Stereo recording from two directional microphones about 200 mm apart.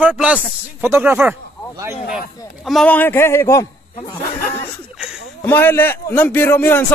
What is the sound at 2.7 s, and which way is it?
A man's voice, 5° left (ahead or behind).